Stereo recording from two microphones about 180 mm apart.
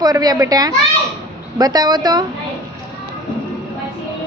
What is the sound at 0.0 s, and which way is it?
A child's voice, 20° right (ahead or behind).